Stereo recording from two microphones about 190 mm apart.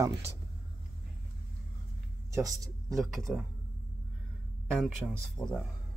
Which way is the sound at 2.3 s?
20° right (ahead or behind).